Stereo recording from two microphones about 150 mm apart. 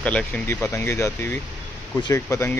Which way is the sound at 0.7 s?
20° left (ahead or behind).